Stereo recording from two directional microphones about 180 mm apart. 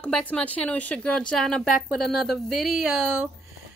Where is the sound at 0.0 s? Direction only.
5° left (ahead or behind).